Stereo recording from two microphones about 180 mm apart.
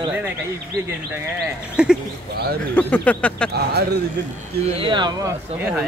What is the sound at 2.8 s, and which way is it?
Speech, 5° left (ahead or behind).